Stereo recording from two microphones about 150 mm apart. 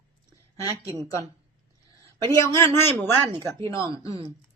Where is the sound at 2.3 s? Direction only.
20° left (ahead or behind).